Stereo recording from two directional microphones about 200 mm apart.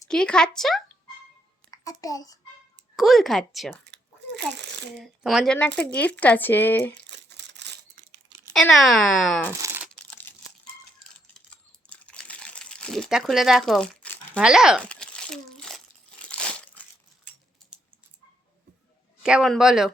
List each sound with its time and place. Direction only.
0.1 s speech: 5° left (ahead or behind)
1.7 s a sound: 15° left (ahead or behind)
2.9 s speech: centre (ahead or behind)
3.8 s crumpling: 60° right (ahead or behind)
4.9 s speech: centre (ahead or behind)
7.1 s crumpling: 60° right (ahead or behind)
8.5 s speech: centre (ahead or behind)
9.5 s crumpling: 15° right (ahead or behind)
11.5 s crumpling: 5° left (ahead or behind)
14.4 s a sound: 5° right (ahead or behind)
16.3 s crumpling: 5° left (ahead or behind)
19.2 s speech: centre (ahead or behind)